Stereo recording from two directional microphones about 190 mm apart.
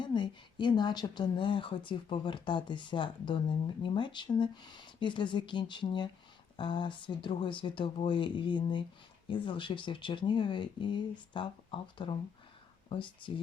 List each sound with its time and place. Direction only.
0.0 s speech: 25° left (ahead or behind)